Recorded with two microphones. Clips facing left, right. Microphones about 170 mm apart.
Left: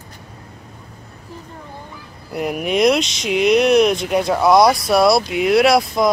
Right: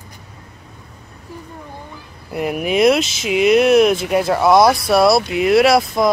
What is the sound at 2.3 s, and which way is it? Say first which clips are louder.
Speech: right 1 dB; centre (ahead or behind).